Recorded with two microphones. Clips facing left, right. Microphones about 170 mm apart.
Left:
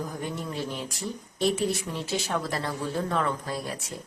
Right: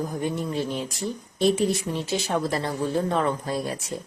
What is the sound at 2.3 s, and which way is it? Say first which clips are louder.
Speech: right 4 dB; 25° right (ahead or behind).